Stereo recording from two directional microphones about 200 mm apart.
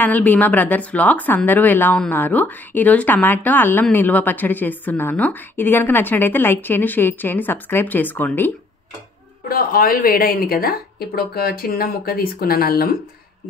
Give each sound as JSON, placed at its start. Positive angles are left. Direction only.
{"t": 0.0, "sound": "speech", "side_deg": 10}
{"t": 9.4, "sound": "a woman's voice", "side_deg": 45}